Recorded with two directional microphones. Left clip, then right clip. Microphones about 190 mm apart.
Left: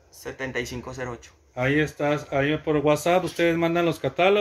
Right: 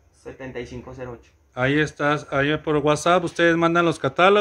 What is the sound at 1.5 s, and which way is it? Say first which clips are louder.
Speech: right 2 dB; 20° right (ahead or behind).